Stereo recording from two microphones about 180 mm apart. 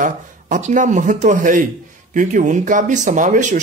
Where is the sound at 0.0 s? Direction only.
45° right (ahead or behind).